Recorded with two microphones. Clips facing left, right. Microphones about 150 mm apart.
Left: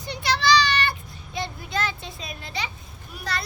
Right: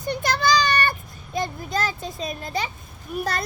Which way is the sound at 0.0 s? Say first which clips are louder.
Right 2 dB; 50° right (ahead or behind).